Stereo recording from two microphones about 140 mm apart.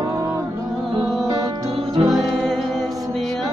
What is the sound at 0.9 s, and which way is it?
Music, 30° right (ahead or behind).